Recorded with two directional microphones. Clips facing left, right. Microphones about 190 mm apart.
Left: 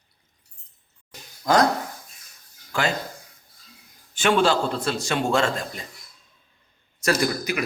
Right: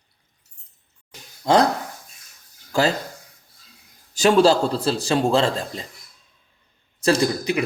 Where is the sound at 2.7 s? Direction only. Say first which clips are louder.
Right 5 dB; 40° right (ahead or behind).